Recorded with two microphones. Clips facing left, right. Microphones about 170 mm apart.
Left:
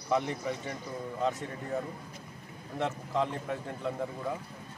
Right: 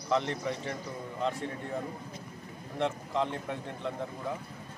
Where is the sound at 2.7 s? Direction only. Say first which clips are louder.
Even; centre (ahead or behind).